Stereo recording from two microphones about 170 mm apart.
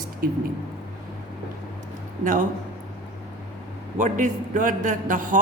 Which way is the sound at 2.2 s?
50° right (ahead or behind).